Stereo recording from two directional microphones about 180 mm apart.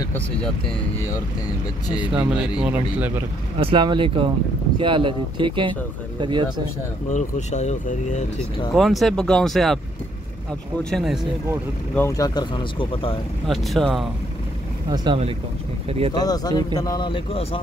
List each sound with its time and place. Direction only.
2.0 s speech: 5° right (ahead or behind)
3.5 s speech: 30° right (ahead or behind)
7.1 s speech: 40° left (ahead or behind)
8.7 s speech: centre (ahead or behind)
10.8 s speech: centre (ahead or behind)
11.9 s speech: 15° left (ahead or behind)
13.5 s speech: centre (ahead or behind)
14.9 s speech: 30° right (ahead or behind)
16.1 s speech: 20° left (ahead or behind)